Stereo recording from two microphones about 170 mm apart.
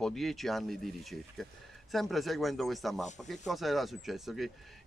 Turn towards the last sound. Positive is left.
turn(degrees=0)  # may be behind; listen again after turning